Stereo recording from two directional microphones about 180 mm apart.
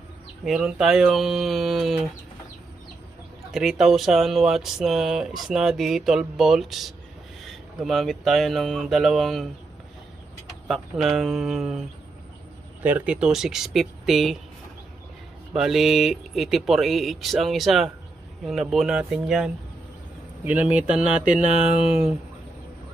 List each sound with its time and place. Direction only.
0.4 s speech: 5° right (ahead or behind)
3.5 s speech: centre (ahead or behind)
10.7 s speech: centre (ahead or behind)
12.8 s speech: 5° right (ahead or behind)
15.5 s speech: centre (ahead or behind)
21.2 s mantra: 45° right (ahead or behind)
21.8 s speech: 5° right (ahead or behind)